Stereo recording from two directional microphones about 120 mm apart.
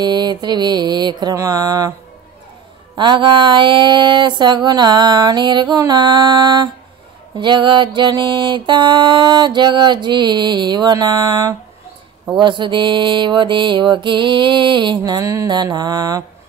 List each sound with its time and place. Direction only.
0.0 s mantra: 35° right (ahead or behind)
1.3 s a sound: 30° right (ahead or behind)
3.0 s mantra: 40° right (ahead or behind)